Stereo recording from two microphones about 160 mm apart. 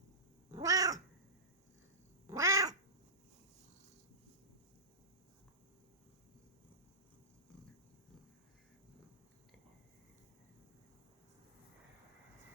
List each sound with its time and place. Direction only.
0.5 s cat: 20° right (ahead or behind)
2.2 s cat: 20° right (ahead or behind)